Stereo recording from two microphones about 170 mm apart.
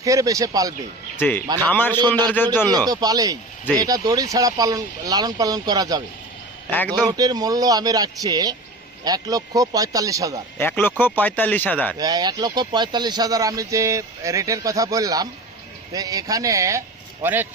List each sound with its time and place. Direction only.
0.0 s speech: 20° right (ahead or behind)
1.2 s speech: 10° left (ahead or behind)
2.6 s speech: 20° right (ahead or behind)
6.7 s speech: 10° left (ahead or behind)
7.1 s speech: 25° right (ahead or behind)
10.6 s speech: 10° left (ahead or behind)
11.9 s speech: 20° right (ahead or behind)